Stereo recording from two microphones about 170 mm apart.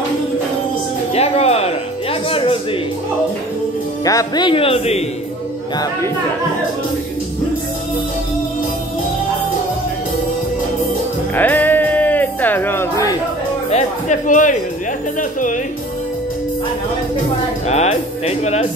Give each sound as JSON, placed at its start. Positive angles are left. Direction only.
{"t": 1.1, "sound": "music", "side_deg": 35}
{"t": 2.2, "sound": "a sound", "side_deg": 30}
{"t": 4.0, "sound": "speech", "side_deg": 20}
{"t": 11.3, "sound": "music", "side_deg": 10}
{"t": 13.7, "sound": "music", "side_deg": 45}
{"t": 15.1, "sound": "speech", "side_deg": 50}
{"t": 17.6, "sound": "speech", "side_deg": 40}